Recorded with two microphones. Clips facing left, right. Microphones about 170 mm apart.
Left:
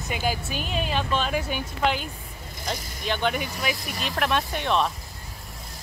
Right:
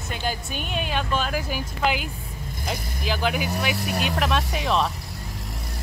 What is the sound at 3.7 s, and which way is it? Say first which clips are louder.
Speech: right 4 dB; 70° right (ahead or behind).